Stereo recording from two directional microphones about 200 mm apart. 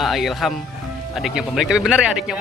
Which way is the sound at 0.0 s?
Centre (ahead or behind).